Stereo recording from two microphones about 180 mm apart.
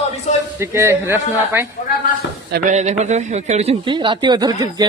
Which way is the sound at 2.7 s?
40° right (ahead or behind).